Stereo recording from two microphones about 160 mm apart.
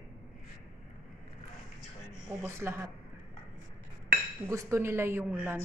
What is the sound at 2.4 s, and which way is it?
Speech, 15° right (ahead or behind).